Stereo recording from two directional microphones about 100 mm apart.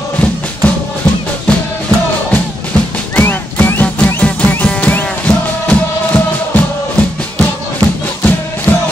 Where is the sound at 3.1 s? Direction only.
20° left (ahead or behind).